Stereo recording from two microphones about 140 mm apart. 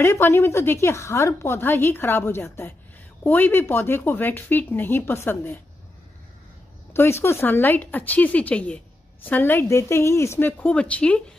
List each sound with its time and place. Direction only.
0.0 s a woman's voice: 20° left (ahead or behind)
6.9 s a woman's voice: 15° left (ahead or behind)